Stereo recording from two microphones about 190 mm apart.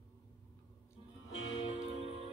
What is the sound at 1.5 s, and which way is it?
Music, 35° left (ahead or behind).